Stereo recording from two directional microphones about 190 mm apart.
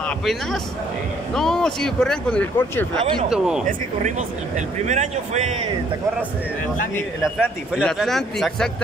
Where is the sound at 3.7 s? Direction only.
40° right (ahead or behind).